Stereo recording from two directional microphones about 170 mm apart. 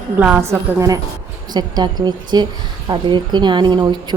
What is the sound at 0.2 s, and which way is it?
A woman's voice, 10° right (ahead or behind).